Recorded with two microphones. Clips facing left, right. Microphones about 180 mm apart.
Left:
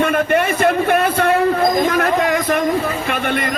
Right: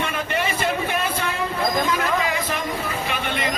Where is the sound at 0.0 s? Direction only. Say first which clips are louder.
Left 9 dB; 55° left (ahead or behind).